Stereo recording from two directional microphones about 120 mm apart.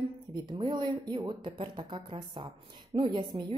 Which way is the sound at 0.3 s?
35° right (ahead or behind).